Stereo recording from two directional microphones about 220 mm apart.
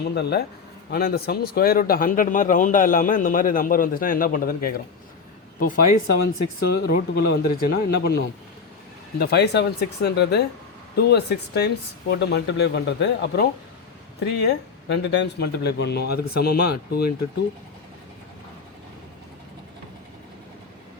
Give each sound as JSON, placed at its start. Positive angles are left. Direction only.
{"t": 0.1, "sound": "speech", "side_deg": 50}